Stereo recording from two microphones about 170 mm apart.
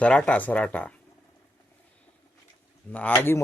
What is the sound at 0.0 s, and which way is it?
Speech, 5° left (ahead or behind).